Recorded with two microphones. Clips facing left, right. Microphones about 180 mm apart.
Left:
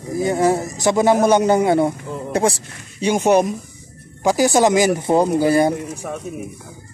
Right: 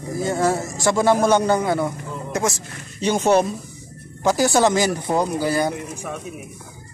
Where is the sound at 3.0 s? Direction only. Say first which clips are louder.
Left 2 dB; 15° left (ahead or behind).